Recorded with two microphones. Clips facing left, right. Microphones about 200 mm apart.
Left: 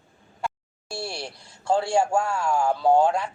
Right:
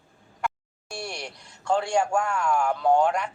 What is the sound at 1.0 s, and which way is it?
A woman's voice, 30° left (ahead or behind).